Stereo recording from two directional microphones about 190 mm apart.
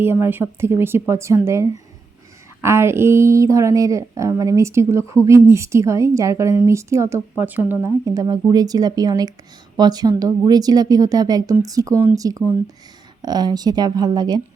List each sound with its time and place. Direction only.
0.0 s speech: 10° right (ahead or behind)